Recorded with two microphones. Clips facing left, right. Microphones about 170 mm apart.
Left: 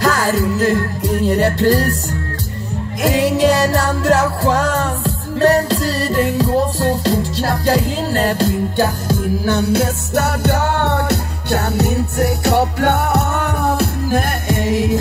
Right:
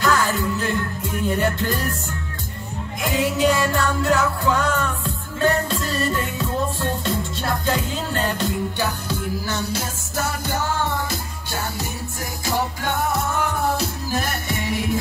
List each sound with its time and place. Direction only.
0.0 s music: 40° left (ahead or behind)
3.1 s music: 40° left (ahead or behind)